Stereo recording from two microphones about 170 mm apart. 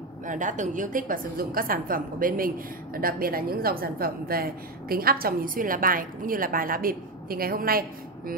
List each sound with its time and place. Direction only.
0.3 s a woman's voice: 50° right (ahead or behind)